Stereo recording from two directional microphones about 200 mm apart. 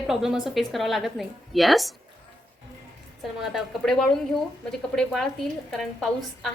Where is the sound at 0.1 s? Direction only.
Centre (ahead or behind).